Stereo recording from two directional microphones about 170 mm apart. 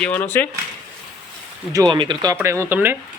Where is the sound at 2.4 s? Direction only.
15° right (ahead or behind).